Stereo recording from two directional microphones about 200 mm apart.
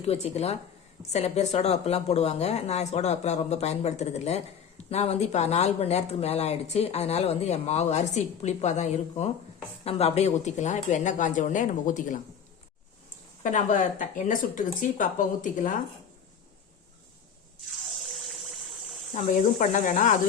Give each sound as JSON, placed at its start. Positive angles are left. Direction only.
{"t": 0.0, "sound": "speech", "side_deg": 30}
{"t": 13.4, "sound": "speech", "side_deg": 40}
{"t": 19.1, "sound": "speech", "side_deg": 35}